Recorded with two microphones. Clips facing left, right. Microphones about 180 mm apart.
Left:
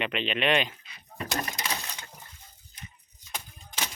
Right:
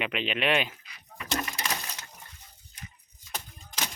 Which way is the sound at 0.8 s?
25° left (ahead or behind).